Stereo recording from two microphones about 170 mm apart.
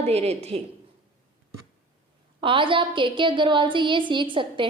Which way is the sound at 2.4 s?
30° right (ahead or behind).